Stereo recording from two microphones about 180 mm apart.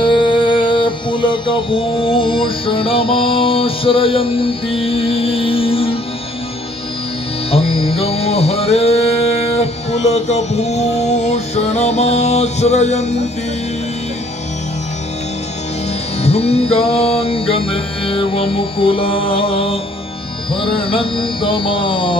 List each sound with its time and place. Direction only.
0.0 s music: 25° left (ahead or behind)
7.5 s music: 35° left (ahead or behind)
16.2 s music: 35° left (ahead or behind)